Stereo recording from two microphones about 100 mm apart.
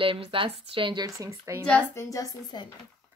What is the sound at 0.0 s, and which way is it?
Speech, 60° right (ahead or behind).